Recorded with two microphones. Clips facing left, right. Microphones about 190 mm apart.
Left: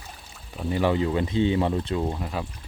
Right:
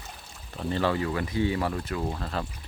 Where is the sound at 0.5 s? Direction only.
10° left (ahead or behind).